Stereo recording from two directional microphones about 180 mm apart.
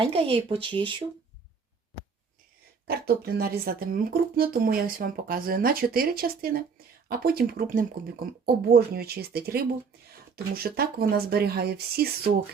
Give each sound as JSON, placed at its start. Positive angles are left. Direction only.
{"t": 0.0, "sound": "speech", "side_deg": -30}
{"t": 2.8, "sound": "speech", "side_deg": -60}